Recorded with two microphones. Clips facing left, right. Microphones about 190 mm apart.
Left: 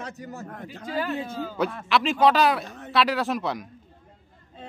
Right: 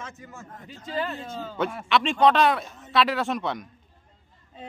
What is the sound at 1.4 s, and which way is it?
A man's voice, centre (ahead or behind).